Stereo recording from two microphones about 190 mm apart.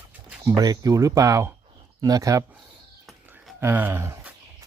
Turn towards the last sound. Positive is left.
turn(degrees=-15)  # may be behind; listen again after turning